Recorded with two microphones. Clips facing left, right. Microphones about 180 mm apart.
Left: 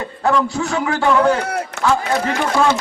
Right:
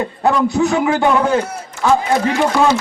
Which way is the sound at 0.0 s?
15° right (ahead or behind).